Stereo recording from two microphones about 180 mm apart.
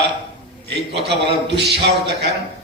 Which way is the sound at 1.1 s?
65° right (ahead or behind).